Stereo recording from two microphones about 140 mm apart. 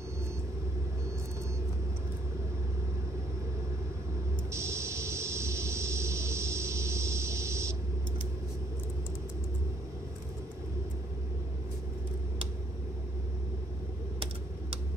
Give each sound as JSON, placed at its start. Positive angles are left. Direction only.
{"t": 4.5, "sound": "vehicle", "side_deg": -20}